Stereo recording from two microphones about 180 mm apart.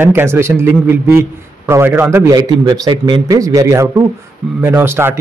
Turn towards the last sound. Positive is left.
turn(degrees=-10)  # may be behind; listen again after turning